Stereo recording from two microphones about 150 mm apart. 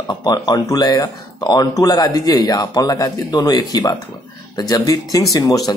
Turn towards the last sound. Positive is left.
turn(degrees=25)  # may be behind; listen again after turning